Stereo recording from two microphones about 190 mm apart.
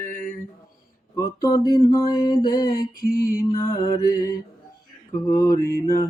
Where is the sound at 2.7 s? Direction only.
55° left (ahead or behind).